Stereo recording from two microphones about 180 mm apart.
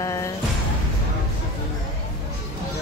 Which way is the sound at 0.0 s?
15° left (ahead or behind).